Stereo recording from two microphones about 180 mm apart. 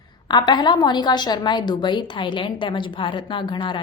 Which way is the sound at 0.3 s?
25° left (ahead or behind).